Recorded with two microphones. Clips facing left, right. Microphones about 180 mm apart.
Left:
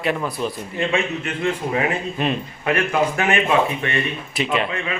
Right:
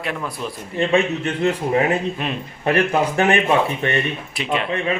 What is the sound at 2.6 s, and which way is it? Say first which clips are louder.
Speech: right 2 dB; 30° right (ahead or behind).